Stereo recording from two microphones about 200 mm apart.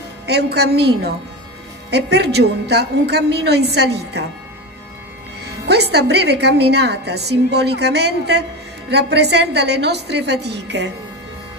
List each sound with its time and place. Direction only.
0.3 s a woman's voice: 55° right (ahead or behind)
5.4 s a woman's voice: 55° right (ahead or behind)